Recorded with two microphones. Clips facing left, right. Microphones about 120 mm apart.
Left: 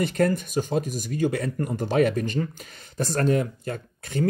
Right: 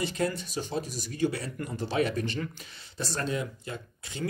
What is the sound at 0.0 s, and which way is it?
Speech, 55° left (ahead or behind).